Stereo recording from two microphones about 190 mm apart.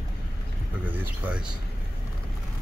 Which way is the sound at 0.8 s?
10° right (ahead or behind).